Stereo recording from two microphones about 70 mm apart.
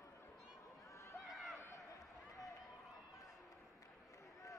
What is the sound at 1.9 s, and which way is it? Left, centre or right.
Run, left.